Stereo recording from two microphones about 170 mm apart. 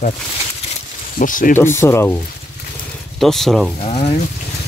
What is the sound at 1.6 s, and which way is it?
Speech, 15° left (ahead or behind).